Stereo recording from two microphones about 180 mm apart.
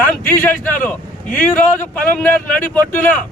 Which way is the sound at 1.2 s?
45° left (ahead or behind).